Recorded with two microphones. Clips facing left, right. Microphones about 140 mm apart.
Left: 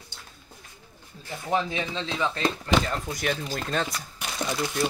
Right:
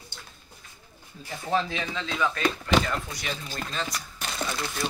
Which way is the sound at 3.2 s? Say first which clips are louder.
Left 5 dB; 55° left (ahead or behind).